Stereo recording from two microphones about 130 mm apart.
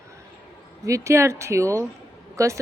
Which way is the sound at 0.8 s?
25° right (ahead or behind).